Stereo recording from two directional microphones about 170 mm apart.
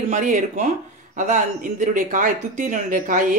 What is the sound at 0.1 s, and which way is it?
Speech, 45° right (ahead or behind).